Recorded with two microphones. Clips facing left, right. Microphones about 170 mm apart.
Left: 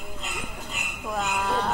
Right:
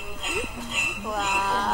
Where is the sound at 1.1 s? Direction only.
Centre (ahead or behind).